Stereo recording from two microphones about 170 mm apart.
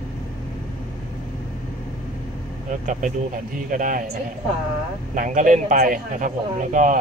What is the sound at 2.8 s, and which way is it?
A man's voice, 45° right (ahead or behind).